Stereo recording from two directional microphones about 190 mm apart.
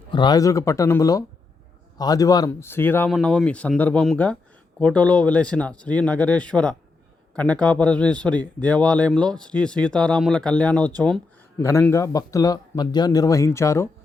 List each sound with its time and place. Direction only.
0.1 s speech: 25° left (ahead or behind)